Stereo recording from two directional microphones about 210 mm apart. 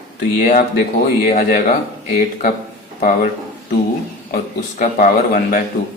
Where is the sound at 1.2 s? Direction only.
40° left (ahead or behind).